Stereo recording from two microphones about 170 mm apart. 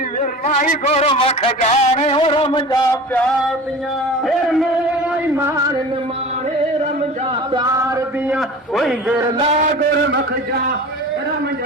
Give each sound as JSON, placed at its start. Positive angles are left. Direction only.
{"t": 0.2, "sound": "a man's voice", "side_deg": 50}
{"t": 8.3, "sound": "a man's voice", "side_deg": 0}
{"t": 9.6, "sound": "a man's voice", "side_deg": -50}
{"t": 10.0, "sound": "a man's voice", "side_deg": -85}